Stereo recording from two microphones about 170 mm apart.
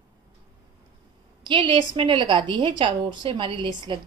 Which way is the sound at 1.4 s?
30° right (ahead or behind).